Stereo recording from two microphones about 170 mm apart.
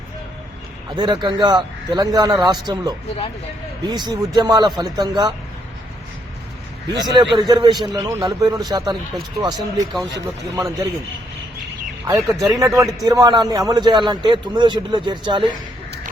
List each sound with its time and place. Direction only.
0.9 s a man's voice: 25° right (ahead or behind)
6.8 s a man's voice: 25° right (ahead or behind)
12.3 s a man's voice: 20° right (ahead or behind)